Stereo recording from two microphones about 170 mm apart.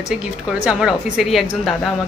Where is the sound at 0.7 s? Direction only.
5° right (ahead or behind).